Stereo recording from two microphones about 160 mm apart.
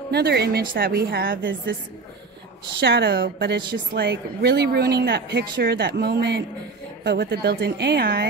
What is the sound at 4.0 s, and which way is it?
Speech, 90° right.